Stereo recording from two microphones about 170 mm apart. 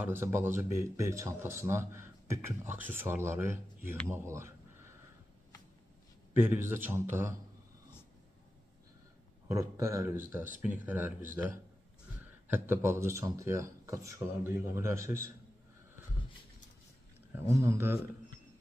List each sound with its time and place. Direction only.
0.0 s speech: 15° right (ahead or behind)
6.3 s speech: 15° right (ahead or behind)
9.5 s speech: 15° right (ahead or behind)
12.4 s speech: 10° right (ahead or behind)
17.3 s speech: 15° right (ahead or behind)